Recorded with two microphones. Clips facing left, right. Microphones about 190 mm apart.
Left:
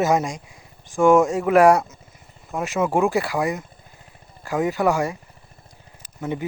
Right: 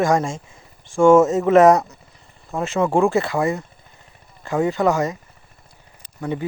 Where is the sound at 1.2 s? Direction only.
10° left (ahead or behind).